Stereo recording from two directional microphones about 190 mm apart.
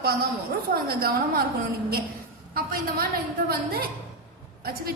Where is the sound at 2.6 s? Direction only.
50° right (ahead or behind).